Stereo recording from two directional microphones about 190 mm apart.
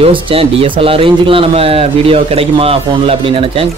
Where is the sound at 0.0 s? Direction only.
30° right (ahead or behind).